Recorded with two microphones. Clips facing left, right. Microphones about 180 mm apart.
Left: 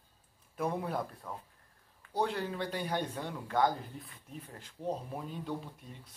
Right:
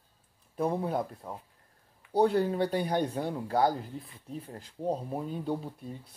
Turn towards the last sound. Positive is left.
turn(degrees=-35)  # may be behind; listen again after turning